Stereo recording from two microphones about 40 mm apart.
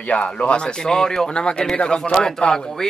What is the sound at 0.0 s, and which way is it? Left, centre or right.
Speech, left.